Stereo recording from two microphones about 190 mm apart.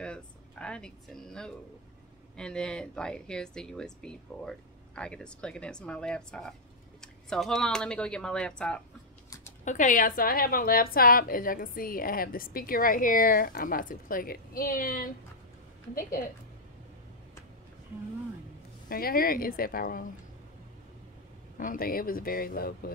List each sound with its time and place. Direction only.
0.0 s speech: 5° left (ahead or behind)
9.7 s speech: 40° left (ahead or behind)
18.9 s speech: 50° left (ahead or behind)
21.5 s speech: 50° left (ahead or behind)